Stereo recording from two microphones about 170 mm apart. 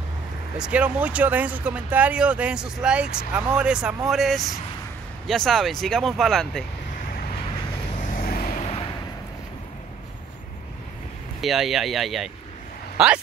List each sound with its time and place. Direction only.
0.6 s speech: 10° right (ahead or behind)
8.0 s vehicle: 55° left (ahead or behind)
8.5 s a sound: 35° left (ahead or behind)
11.4 s speech: centre (ahead or behind)